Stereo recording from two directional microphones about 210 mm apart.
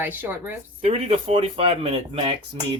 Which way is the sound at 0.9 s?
30° right (ahead or behind).